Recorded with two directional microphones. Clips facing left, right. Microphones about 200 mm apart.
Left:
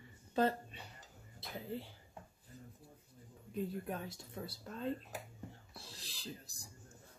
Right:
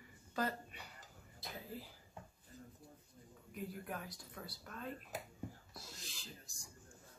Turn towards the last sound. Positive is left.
turn(degrees=35)  # may be behind; listen again after turning